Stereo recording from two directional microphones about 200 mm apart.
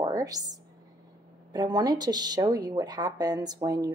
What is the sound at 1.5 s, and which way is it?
Speech, 20° right (ahead or behind).